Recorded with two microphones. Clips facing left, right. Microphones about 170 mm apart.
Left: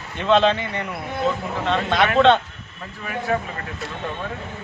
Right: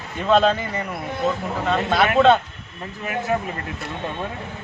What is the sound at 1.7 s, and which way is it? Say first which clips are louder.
Speech: even; 5° right (ahead or behind).